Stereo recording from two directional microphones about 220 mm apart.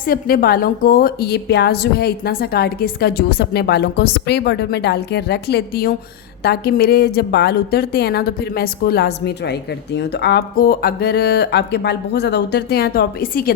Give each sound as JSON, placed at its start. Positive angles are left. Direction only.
{"t": 0.0, "sound": "a woman's voice", "side_deg": 40}